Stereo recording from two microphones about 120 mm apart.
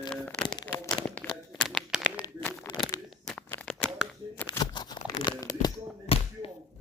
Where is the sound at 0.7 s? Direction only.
15° left (ahead or behind).